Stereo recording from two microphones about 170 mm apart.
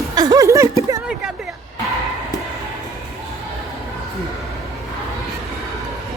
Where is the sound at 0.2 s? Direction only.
20° right (ahead or behind).